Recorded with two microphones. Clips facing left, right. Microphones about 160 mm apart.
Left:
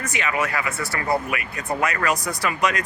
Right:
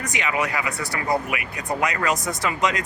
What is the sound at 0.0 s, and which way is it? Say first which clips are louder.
Speech: even; 20° right (ahead or behind).